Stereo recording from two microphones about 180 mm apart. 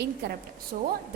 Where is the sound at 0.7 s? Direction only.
50° right (ahead or behind).